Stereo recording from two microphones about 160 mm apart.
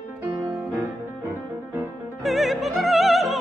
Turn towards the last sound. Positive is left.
turn(degrees=0)  # may be behind; listen again after turning